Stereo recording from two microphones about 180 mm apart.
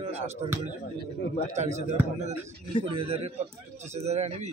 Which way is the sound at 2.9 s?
30° right (ahead or behind).